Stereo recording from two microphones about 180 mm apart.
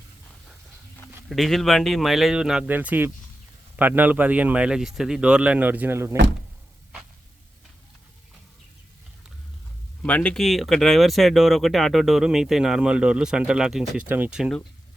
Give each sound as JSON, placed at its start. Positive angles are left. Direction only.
{"t": 1.3, "sound": "speech", "side_deg": 0}
{"t": 10.0, "sound": "speech", "side_deg": 5}